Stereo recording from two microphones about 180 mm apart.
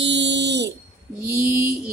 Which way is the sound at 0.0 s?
80° right.